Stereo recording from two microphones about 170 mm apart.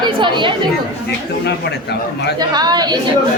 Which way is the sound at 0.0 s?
25° right (ahead or behind).